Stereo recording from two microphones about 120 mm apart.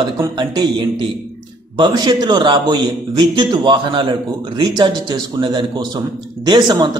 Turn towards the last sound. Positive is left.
turn(degrees=-35)  # may be behind; listen again after turning